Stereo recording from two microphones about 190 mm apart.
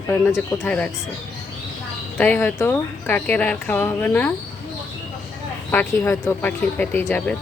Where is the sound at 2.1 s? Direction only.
10° left (ahead or behind).